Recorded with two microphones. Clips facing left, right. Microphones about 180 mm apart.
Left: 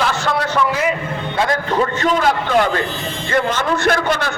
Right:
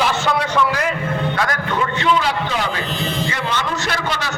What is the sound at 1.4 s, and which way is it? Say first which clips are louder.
Speech: left 4 dB; 25° left (ahead or behind).